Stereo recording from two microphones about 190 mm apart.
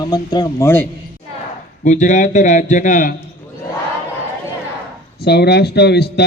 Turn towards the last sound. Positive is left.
turn(degrees=60)  # may be behind; listen again after turning